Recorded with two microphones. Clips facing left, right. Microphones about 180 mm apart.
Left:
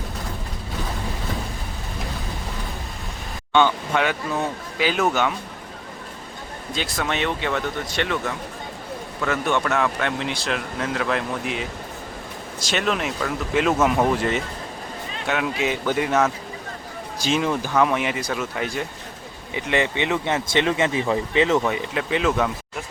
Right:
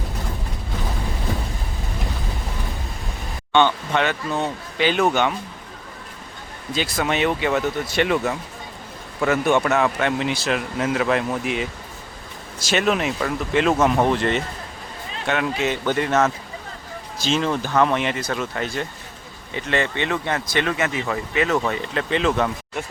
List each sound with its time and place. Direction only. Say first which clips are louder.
3.5 s speech: right 1 dB; 5° left (ahead or behind)
6.7 s speech: right 3 dB; centre (ahead or behind)
9.2 s speech: right 4 dB; 10° right (ahead or behind); by 21.6 s 25° left (ahead or behind)
21.6 s speech: even; 10° left (ahead or behind)